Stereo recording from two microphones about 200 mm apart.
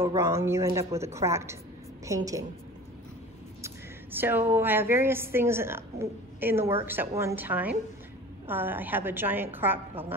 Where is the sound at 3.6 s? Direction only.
10° right (ahead or behind).